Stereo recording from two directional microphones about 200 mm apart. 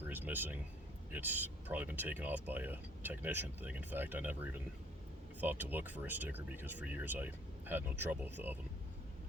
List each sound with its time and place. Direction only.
0.0 s speech: 10° right (ahead or behind)